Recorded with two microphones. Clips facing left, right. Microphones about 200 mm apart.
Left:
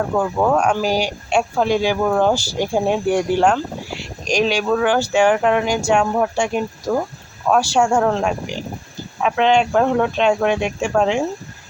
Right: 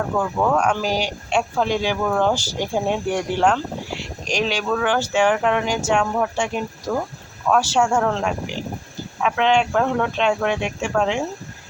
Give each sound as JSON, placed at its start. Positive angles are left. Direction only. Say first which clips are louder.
{"t": 0.1, "sound": "speech", "louder": "left 2 dB", "side_deg": 20}